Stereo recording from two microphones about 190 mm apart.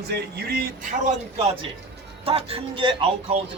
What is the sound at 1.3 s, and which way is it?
A man's voice, 35° right (ahead or behind).